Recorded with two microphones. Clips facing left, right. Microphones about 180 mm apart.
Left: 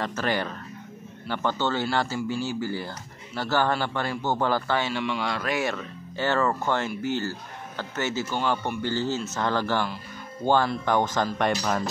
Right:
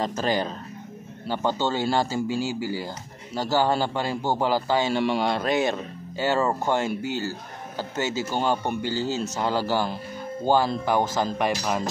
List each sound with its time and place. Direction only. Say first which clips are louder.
0.0 s a man's voice: right 2 dB; 15° right (ahead or behind)
4.8 s speech: right 5 dB; 40° right (ahead or behind)
5.2 s a man's voice: right 4 dB; 25° right (ahead or behind)
8.4 s speech: right 3 dB; 40° right (ahead or behind)
8.8 s a man's voice: right 1 dB; 10° right (ahead or behind)